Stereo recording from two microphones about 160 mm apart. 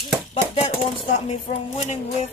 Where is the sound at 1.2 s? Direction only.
45° left (ahead or behind).